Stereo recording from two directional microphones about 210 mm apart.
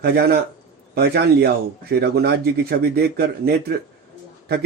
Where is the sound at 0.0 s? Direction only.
50° right (ahead or behind).